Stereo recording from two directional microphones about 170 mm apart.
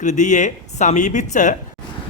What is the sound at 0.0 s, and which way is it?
Speech, 45° left (ahead or behind).